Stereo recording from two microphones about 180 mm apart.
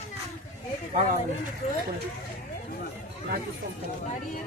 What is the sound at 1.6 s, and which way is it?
Speech, 35° left (ahead or behind).